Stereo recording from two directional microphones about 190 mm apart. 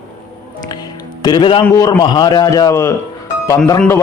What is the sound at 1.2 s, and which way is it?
Speech, 25° left (ahead or behind).